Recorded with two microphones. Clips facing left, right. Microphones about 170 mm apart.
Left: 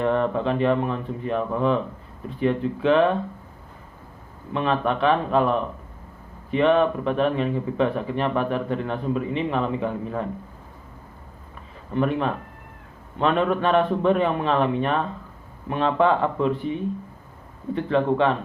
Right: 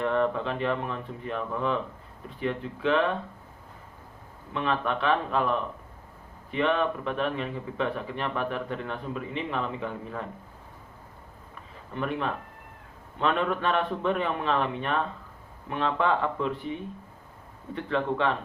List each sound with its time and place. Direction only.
0.0 s speech: 25° left (ahead or behind)
4.5 s speech: 25° left (ahead or behind)
11.9 s speech: 30° left (ahead or behind)
17.7 s speech: 20° left (ahead or behind)